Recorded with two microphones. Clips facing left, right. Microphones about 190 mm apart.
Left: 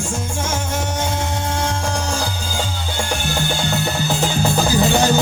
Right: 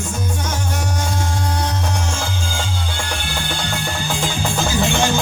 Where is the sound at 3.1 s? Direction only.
45° left (ahead or behind).